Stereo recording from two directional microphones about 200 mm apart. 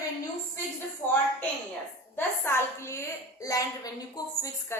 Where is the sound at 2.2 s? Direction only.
10° left (ahead or behind).